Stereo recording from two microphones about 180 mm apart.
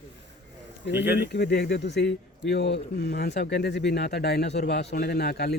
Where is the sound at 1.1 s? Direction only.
65° left (ahead or behind).